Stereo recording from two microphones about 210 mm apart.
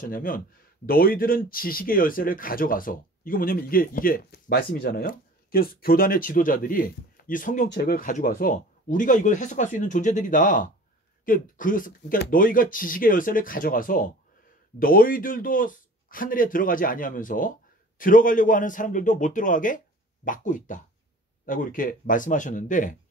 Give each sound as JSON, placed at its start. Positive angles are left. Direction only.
{"t": 0.0, "sound": "speech", "side_deg": 40}